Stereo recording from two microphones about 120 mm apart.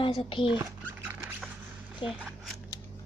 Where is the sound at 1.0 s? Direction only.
15° right (ahead or behind).